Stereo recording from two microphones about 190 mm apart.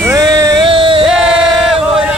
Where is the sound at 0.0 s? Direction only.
15° right (ahead or behind).